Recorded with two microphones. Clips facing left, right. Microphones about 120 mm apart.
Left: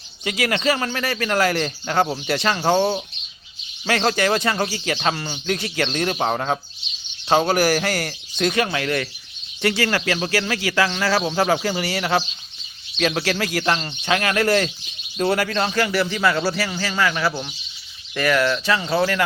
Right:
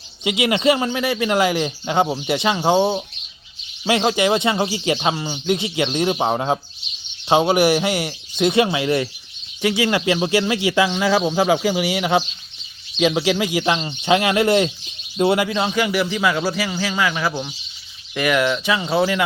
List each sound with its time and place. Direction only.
0.3 s speech: 15° right (ahead or behind)
3.8 s speech: 15° right (ahead or behind)